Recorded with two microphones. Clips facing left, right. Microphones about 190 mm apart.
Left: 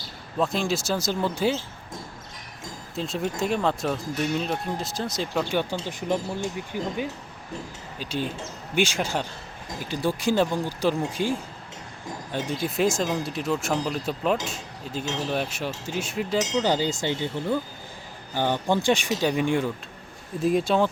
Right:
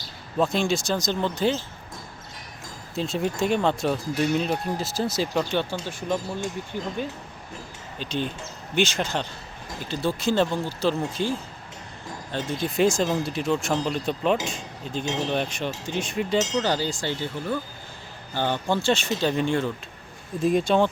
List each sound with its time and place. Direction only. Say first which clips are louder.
0.3 s speech: right 2 dB; centre (ahead or behind)
2.9 s speech: right 2 dB; centre (ahead or behind)
5.8 s speech: left 1 dB; 15° left (ahead or behind)
16.4 s speech: left 1 dB; 15° left (ahead or behind)